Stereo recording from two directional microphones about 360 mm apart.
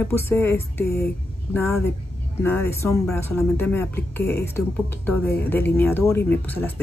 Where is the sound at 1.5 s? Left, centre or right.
Centre.